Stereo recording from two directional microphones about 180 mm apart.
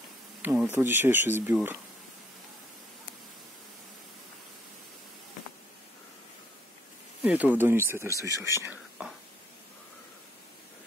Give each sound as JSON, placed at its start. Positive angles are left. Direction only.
{"t": 0.4, "sound": "speech", "side_deg": -10}
{"t": 7.2, "sound": "speech", "side_deg": -10}